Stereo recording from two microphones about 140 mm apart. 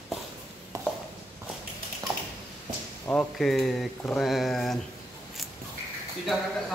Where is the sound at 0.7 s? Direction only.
25° right (ahead or behind).